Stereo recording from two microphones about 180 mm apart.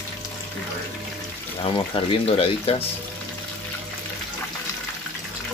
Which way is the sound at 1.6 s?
30° left (ahead or behind).